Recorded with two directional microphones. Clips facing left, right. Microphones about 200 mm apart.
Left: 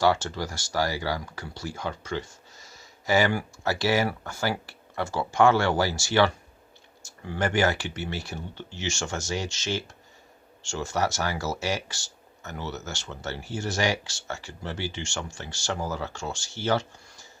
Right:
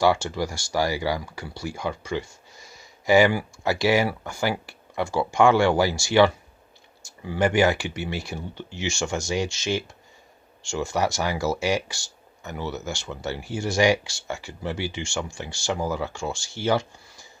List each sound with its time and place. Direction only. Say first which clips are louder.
0.0 s speech: right 2 dB; 10° right (ahead or behind)